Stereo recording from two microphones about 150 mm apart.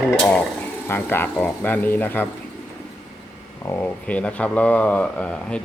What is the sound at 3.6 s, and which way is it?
Speech, 15° left (ahead or behind).